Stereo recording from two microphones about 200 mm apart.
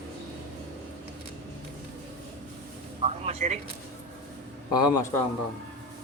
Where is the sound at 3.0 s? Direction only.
30° right (ahead or behind).